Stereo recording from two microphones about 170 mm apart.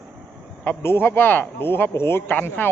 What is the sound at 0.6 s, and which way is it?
Speech, 15° left (ahead or behind).